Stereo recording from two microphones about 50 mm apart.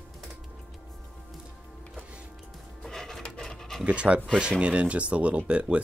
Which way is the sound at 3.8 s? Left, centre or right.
Right.